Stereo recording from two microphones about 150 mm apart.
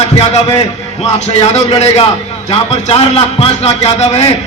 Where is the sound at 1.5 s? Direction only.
45° left (ahead or behind).